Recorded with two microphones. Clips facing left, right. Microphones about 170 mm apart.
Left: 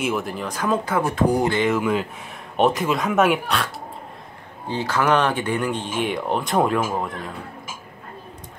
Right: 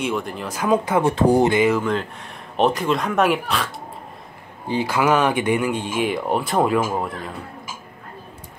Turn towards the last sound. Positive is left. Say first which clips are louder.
# right 1 dB
turn(degrees=0)  # may be behind; listen again after turning